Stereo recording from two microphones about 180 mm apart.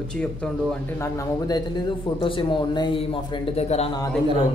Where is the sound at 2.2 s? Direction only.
25° left (ahead or behind).